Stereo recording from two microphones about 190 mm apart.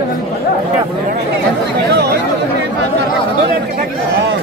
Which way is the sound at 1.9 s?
55° right (ahead or behind).